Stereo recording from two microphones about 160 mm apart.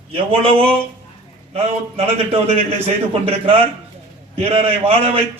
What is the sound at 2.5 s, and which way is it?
A man's voice, 40° right (ahead or behind).